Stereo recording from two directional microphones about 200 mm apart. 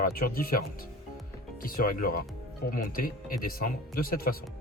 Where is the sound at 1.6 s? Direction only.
45° left (ahead or behind).